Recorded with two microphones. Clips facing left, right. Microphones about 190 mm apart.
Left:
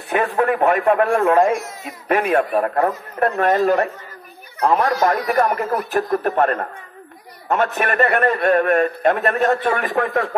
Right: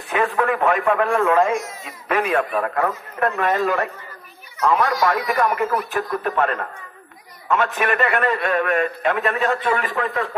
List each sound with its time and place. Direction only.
0.1 s radio: 40° left (ahead or behind)
0.8 s a man's voice: 45° left (ahead or behind); by 10.3 s 60° left (ahead or behind)